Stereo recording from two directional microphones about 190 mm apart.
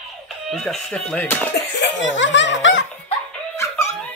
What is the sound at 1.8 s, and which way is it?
Laughter, 75° left (ahead or behind).